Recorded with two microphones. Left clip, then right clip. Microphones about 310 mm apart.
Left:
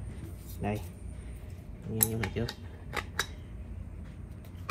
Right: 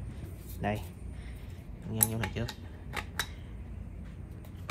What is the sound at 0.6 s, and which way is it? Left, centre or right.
Speech, centre.